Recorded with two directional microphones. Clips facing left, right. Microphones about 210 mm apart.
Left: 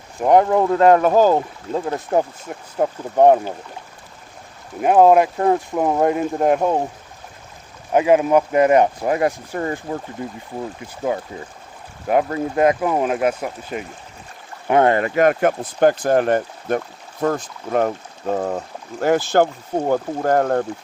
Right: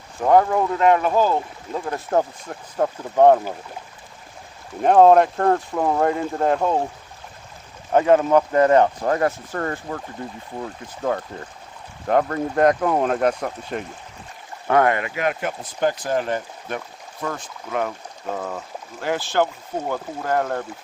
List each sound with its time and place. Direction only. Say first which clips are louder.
0.2 s speech: left 2 dB; 20° left (ahead or behind)
0.8 s speech: left 4 dB; 40° left (ahead or behind)
2.0 s speech: left 1 dB; 10° left (ahead or behind)
4.8 s speech: even; 10° left (ahead or behind)
7.9 s speech: left 1 dB; 10° left (ahead or behind)
14.7 s speech: left 3 dB; 25° left (ahead or behind)